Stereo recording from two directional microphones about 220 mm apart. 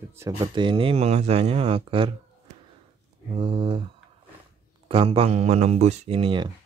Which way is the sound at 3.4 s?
20° right (ahead or behind).